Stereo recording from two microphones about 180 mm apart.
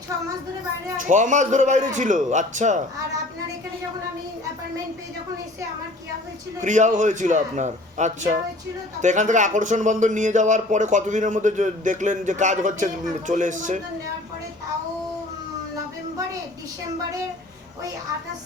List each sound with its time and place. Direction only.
0.9 s speech: 45° right (ahead or behind)
6.6 s speech: 45° right (ahead or behind)